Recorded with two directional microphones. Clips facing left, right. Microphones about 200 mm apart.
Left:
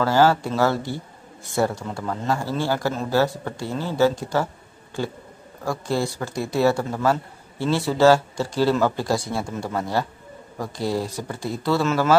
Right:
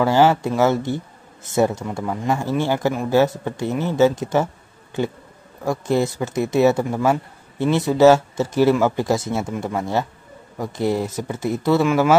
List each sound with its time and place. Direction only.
0.0 s speech: 15° right (ahead or behind)
5.7 s speech: 20° right (ahead or behind)